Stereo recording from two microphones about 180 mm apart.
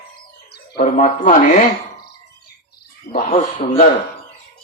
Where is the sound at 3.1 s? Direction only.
40° left (ahead or behind).